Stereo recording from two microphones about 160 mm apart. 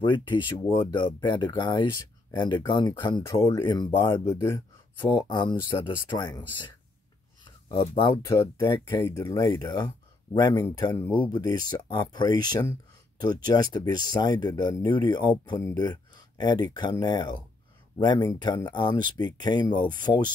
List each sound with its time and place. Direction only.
0.0 s speech: 30° left (ahead or behind)
7.7 s speech: 30° left (ahead or behind)
8.3 s speech: 20° left (ahead or behind)
11.1 s speech: 25° left (ahead or behind)